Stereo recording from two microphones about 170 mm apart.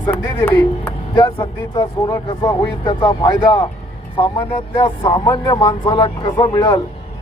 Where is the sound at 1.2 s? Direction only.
30° left (ahead or behind).